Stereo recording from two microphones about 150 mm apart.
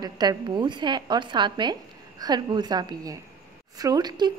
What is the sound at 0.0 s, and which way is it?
A woman's voice, 25° right (ahead or behind).